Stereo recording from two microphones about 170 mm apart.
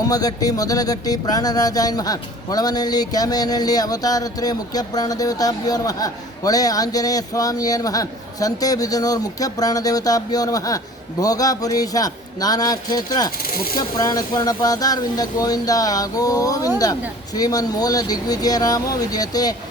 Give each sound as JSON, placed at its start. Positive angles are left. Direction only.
{"t": 0.1, "sound": "music", "side_deg": 20}